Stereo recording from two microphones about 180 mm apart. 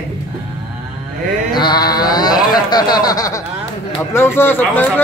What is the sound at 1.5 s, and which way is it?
A man's voice, 25° left (ahead or behind).